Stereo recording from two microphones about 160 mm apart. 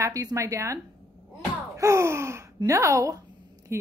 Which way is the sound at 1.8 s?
20° right (ahead or behind).